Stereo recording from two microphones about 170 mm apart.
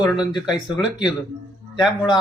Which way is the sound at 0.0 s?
5° right (ahead or behind).